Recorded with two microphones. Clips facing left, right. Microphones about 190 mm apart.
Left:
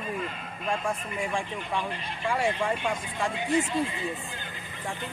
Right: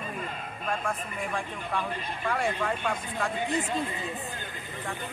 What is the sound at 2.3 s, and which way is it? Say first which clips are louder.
Speech: left 2 dB; 10° left (ahead or behind).